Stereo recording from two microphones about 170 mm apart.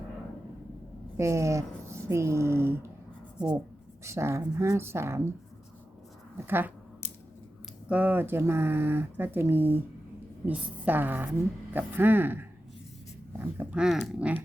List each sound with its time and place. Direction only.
1.1 s speech: 15° right (ahead or behind)
4.0 s speech: 15° right (ahead or behind)
6.3 s speech: 10° right (ahead or behind)
7.9 s speech: 10° right (ahead or behind)
10.8 s speech: 10° right (ahead or behind)